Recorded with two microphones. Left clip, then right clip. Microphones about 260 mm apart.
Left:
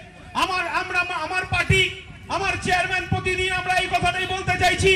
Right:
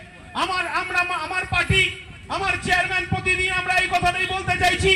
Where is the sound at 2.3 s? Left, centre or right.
Left.